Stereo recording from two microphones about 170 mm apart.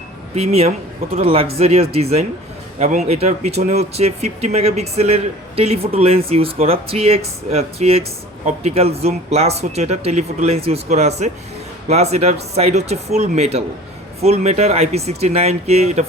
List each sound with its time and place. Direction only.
0.3 s speech: 40° right (ahead or behind)